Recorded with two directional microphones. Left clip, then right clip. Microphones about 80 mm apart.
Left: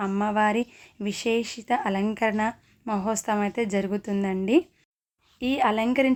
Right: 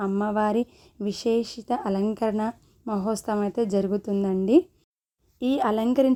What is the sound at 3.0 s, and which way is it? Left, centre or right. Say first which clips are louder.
Speech: right 1 dB; left.